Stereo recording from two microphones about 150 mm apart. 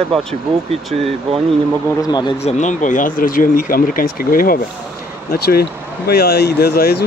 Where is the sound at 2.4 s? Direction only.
55° left (ahead or behind); by 4.6 s 75° left (ahead or behind).